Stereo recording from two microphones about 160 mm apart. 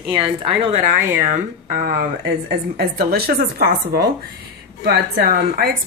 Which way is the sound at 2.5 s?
80° right.